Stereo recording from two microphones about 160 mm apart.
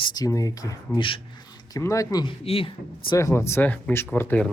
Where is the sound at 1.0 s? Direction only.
35° left (ahead or behind).